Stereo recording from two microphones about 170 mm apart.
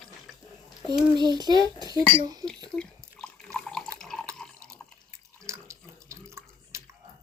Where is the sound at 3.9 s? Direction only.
5° left (ahead or behind).